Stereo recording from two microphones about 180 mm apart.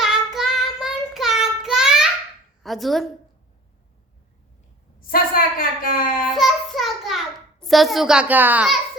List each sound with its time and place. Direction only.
0.0 s child singing: centre (ahead or behind)
2.6 s a child's voice: centre (ahead or behind)
4.9 s a woman's voice: 50° left (ahead or behind)
6.3 s a sound: centre (ahead or behind)
7.6 s a child's voice: centre (ahead or behind)